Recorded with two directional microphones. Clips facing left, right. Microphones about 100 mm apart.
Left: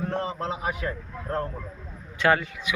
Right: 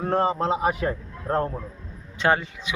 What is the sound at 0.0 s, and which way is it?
A man's voice, 50° right (ahead or behind).